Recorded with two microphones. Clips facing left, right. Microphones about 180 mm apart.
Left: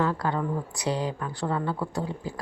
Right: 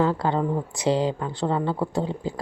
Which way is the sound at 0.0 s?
30° right (ahead or behind).